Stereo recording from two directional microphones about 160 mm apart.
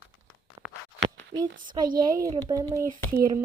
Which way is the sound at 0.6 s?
30° right (ahead or behind).